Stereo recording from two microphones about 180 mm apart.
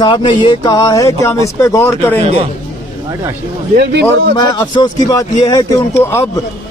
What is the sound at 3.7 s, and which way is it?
Speech, 65° right (ahead or behind).